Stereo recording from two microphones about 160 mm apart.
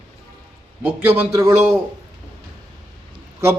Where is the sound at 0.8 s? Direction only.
10° right (ahead or behind).